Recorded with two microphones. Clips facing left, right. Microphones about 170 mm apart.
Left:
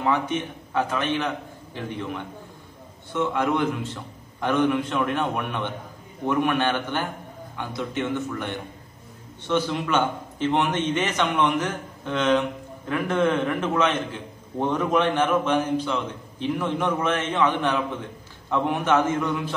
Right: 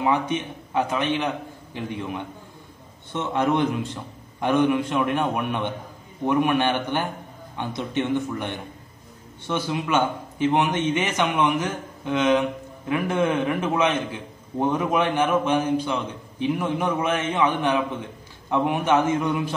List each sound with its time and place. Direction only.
0.0 s a man's voice: 15° right (ahead or behind)
9.5 s a man's voice: 10° right (ahead or behind)